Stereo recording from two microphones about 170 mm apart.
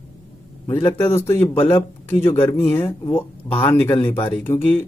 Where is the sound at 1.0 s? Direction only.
15° left (ahead or behind).